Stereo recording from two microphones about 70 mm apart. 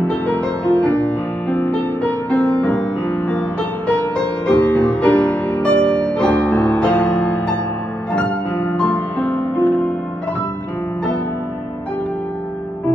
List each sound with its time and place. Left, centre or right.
0.0 s music: centre